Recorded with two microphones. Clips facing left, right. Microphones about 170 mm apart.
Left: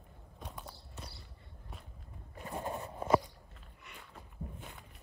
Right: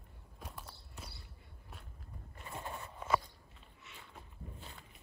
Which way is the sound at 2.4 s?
40° left (ahead or behind).